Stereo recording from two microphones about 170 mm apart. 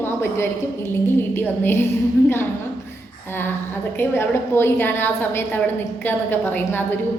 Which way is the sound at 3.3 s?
10° left (ahead or behind).